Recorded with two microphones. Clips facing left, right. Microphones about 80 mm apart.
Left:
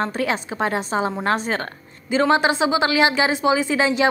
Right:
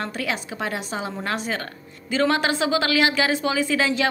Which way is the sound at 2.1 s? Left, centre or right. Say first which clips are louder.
Left 4 dB; left.